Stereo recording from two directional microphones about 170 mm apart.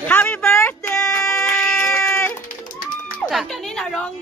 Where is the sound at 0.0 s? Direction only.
10° left (ahead or behind).